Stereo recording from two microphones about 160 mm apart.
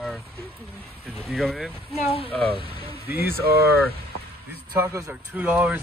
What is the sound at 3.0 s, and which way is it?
Speech, 15° right (ahead or behind).